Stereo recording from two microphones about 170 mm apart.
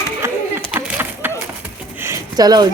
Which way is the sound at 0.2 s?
15° right (ahead or behind).